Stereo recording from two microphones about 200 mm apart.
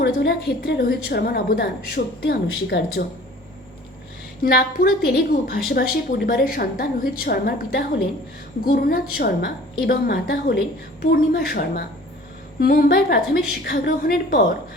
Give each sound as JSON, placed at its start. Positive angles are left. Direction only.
{"t": 0.0, "sound": "a woman's voice", "side_deg": 60}
{"t": 4.4, "sound": "a woman's voice", "side_deg": 50}